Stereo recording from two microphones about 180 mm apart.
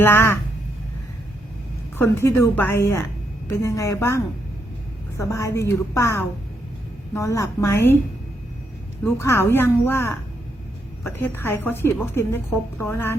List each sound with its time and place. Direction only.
0.0 s a woman's voice: 15° left (ahead or behind)
2.0 s a woman's voice: 15° left (ahead or behind)
9.0 s a woman's voice: 15° left (ahead or behind)